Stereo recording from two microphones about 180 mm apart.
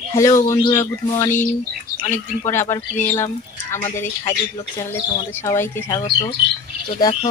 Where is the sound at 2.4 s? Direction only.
15° left (ahead or behind).